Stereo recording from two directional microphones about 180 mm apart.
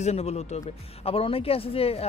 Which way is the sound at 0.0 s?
35° left (ahead or behind).